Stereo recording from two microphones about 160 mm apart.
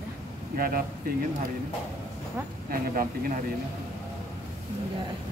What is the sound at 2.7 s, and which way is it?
Speech, 60° right (ahead or behind).